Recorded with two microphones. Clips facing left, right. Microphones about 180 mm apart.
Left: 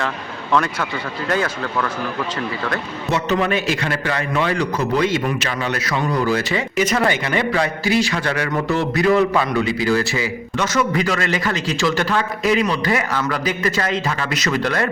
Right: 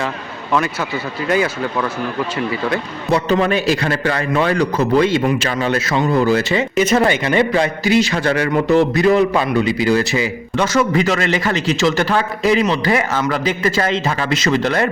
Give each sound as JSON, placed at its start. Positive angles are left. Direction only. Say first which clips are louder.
{"t": 0.5, "sound": "speech", "louder": "right 1 dB", "side_deg": -5}
{"t": 3.1, "sound": "a man's voice", "louder": "right 4 dB", "side_deg": -35}
{"t": 10.6, "sound": "a man's voice", "louder": "right 4 dB", "side_deg": -30}